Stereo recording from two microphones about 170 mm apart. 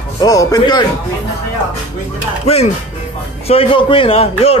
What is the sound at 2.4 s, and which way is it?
Speech, 40° left (ahead or behind).